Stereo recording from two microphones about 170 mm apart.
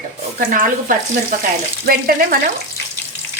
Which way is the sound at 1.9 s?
60° right (ahead or behind).